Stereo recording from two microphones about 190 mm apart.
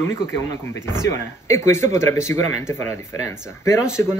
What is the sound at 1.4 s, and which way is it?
Speech, 15° left (ahead or behind).